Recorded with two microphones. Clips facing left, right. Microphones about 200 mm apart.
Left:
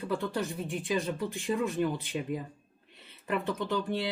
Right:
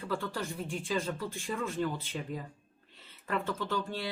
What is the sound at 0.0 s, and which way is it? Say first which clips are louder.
Speech: left 4 dB; 20° left (ahead or behind).